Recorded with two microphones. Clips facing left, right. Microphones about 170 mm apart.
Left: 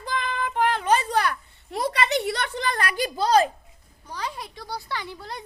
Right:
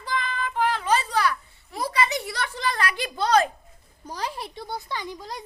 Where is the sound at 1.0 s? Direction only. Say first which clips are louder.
Even; 55° left (ahead or behind).